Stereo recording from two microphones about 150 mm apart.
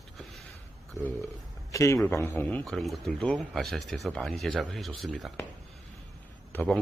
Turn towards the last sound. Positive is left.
turn(degrees=10)  # may be behind; listen again after turning